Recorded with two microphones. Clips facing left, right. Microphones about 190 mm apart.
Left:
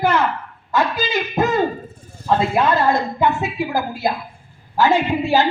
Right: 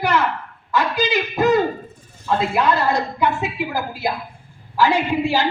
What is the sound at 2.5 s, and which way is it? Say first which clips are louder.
A woman's voice: even; 45° left (ahead or behind).